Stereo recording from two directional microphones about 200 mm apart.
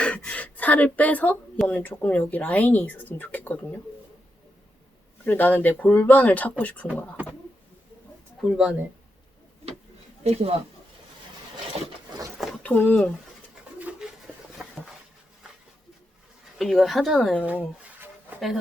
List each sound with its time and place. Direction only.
0.0 s speech: 5° left (ahead or behind)
5.2 s speech: 10° left (ahead or behind)
8.4 s speech: centre (ahead or behind)
10.2 s speech: 30° right (ahead or behind)
11.7 s a sound: 30° right (ahead or behind)
12.4 s a sound: 5° left (ahead or behind)
13.7 s toothbrush: 5° right (ahead or behind)
16.6 s speech: centre (ahead or behind)
18.0 s a sound: centre (ahead or behind)